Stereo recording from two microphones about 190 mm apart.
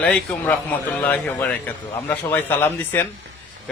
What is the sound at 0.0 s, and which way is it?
Speech, 10° left (ahead or behind).